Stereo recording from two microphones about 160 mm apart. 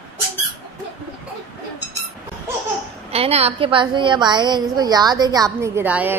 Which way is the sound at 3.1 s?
40° right (ahead or behind).